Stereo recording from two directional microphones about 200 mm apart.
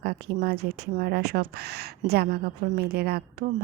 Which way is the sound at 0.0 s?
50° right (ahead or behind).